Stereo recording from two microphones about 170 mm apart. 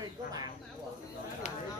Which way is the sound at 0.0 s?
20° right (ahead or behind).